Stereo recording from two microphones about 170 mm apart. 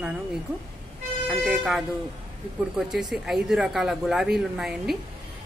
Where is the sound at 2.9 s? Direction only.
Centre (ahead or behind).